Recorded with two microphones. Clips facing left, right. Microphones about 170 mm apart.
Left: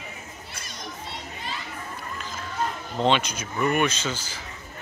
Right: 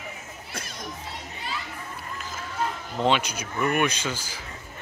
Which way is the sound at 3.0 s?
10° right (ahead or behind).